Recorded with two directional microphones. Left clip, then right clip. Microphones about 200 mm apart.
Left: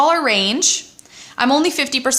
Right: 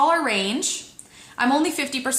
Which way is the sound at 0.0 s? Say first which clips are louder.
Left 5 dB; 45° left (ahead or behind).